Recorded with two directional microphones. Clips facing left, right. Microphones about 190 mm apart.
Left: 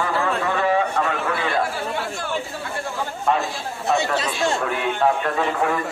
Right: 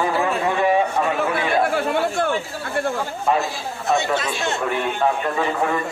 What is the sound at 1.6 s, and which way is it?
Speech, 60° right (ahead or behind).